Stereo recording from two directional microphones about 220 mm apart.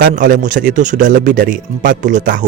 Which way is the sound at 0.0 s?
40° right (ahead or behind).